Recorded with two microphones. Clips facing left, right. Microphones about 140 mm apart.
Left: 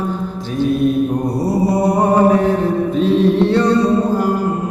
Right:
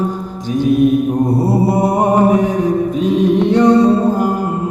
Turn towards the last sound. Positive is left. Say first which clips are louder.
# right 2 dB
turn(degrees=-15)  # may be behind; listen again after turning